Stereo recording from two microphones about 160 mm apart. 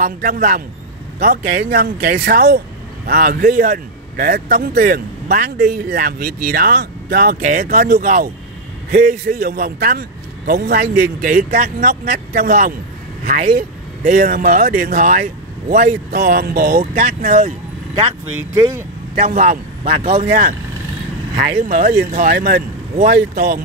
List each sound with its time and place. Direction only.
0.0 s a man's voice: 55° right (ahead or behind); by 2.6 s 80° right
3.1 s a man's voice: 65° right (ahead or behind)
7.3 s speech: 50° right (ahead or behind)
7.6 s a man's voice: 65° right (ahead or behind); by 10.9 s 85° right
11.5 s a man's voice: 60° right (ahead or behind)
13.3 s speech: 45° right (ahead or behind)
14.0 s a man's voice: 60° right (ahead or behind)
16.1 s a man's voice: 85° right
16.8 s speech: 40° right (ahead or behind)
18.5 s speech: 25° right (ahead or behind)
19.2 s speech: 45° right (ahead or behind)
21.6 s speech: 50° right (ahead or behind)